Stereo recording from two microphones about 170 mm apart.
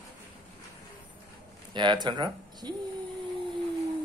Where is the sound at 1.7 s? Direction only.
25° right (ahead or behind).